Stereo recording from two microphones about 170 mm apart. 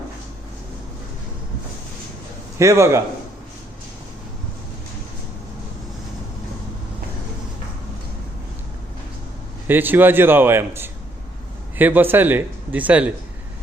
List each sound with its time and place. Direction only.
2.6 s speech: 15° right (ahead or behind)
9.6 s speech: 10° right (ahead or behind)